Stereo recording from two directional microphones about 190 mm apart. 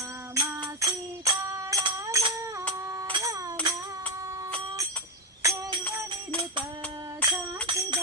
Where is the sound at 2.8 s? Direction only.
15° right (ahead or behind).